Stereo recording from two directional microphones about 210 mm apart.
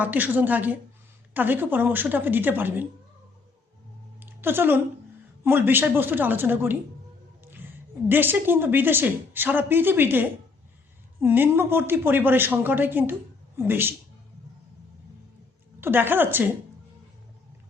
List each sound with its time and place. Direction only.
0.0 s a woman's voice: 10° right (ahead or behind)
4.2 s a sound: 10° right (ahead or behind)
5.4 s a woman's voice: 10° right (ahead or behind)
15.8 s a woman's voice: 10° right (ahead or behind)